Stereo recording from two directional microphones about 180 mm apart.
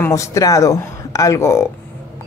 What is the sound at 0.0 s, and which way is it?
Speech, 15° left (ahead or behind).